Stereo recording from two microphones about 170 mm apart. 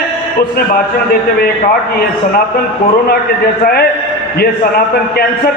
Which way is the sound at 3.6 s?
65° left (ahead or behind).